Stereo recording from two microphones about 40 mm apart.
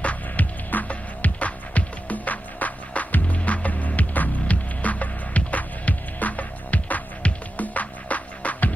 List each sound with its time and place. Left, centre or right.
0.0 s music: left